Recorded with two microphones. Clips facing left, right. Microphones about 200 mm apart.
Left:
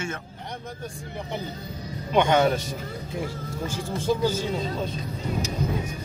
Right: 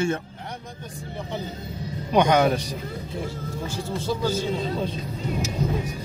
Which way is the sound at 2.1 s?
15° right (ahead or behind).